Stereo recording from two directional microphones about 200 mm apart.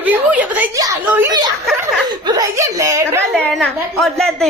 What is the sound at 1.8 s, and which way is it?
Chuckle, 15° right (ahead or behind).